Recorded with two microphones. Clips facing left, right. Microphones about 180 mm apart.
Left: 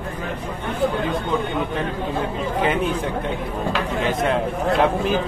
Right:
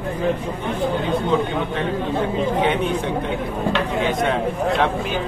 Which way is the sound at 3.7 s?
Centre (ahead or behind).